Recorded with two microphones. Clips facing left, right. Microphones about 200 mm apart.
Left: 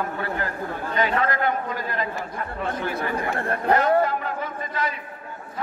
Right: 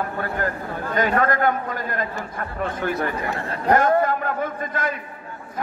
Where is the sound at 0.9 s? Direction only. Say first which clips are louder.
Right 3 dB; 45° right (ahead or behind).